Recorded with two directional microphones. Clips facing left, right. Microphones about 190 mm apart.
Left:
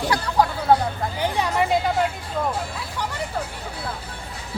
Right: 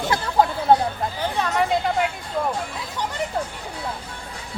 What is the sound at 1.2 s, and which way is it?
Hubbub, 15° left (ahead or behind).